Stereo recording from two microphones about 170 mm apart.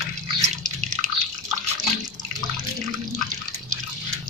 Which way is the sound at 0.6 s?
45° right (ahead or behind).